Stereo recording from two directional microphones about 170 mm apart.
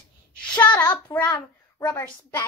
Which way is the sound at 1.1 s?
25° left (ahead or behind).